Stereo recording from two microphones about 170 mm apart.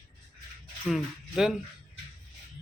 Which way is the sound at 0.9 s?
5° right (ahead or behind).